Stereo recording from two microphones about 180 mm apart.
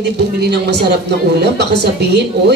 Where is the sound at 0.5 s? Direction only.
70° right (ahead or behind).